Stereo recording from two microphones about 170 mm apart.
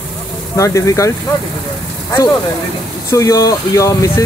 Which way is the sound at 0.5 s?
20° left (ahead or behind).